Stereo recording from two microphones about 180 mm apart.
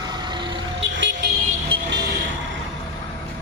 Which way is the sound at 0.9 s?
85° right.